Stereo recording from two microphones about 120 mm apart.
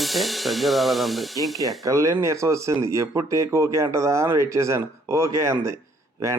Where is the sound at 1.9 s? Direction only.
25° right (ahead or behind).